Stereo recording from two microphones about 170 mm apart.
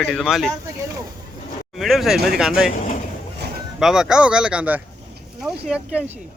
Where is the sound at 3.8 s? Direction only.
5° right (ahead or behind).